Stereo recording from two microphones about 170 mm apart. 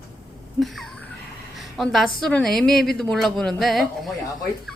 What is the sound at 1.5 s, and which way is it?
A woman's voice, centre (ahead or behind).